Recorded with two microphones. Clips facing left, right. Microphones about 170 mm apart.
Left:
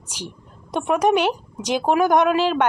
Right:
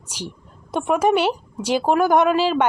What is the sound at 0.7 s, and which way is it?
A woman's voice, 5° right (ahead or behind).